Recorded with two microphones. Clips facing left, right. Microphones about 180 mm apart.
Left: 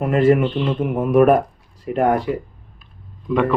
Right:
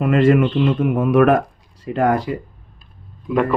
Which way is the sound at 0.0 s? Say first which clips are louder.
Right 1 dB; 90° right.